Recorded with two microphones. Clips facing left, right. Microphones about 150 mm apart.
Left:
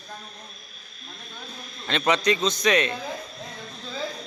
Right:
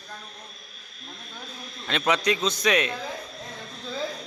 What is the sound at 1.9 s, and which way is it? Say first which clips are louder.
Speech: left 2 dB; 5° right (ahead or behind).